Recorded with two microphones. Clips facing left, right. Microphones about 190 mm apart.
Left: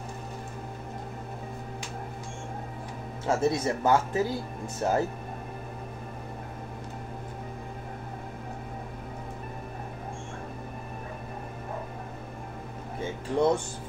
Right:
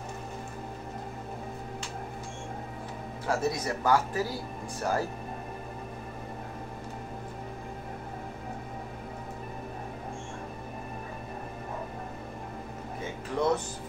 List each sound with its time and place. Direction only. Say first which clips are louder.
3.3 s speech: left 4 dB; 25° left (ahead or behind)
13.3 s speech: left 5 dB; 30° left (ahead or behind)